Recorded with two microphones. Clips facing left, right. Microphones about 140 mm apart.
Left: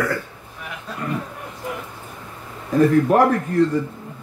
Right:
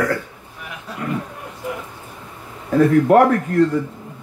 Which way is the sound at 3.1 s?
80° right.